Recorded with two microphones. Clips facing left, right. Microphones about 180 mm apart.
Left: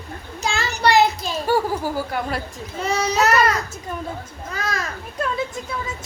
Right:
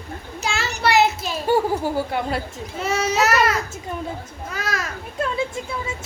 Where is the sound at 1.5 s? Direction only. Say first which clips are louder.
Right 2 dB; 25° right (ahead or behind).